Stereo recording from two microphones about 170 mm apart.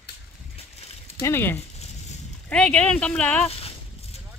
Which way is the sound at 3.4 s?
35° left (ahead or behind).